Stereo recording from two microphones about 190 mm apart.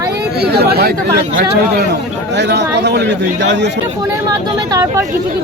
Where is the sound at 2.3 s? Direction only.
65° right (ahead or behind).